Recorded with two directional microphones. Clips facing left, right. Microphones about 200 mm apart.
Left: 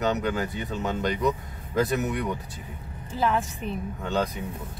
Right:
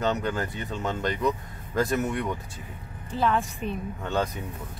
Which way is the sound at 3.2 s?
5° left (ahead or behind).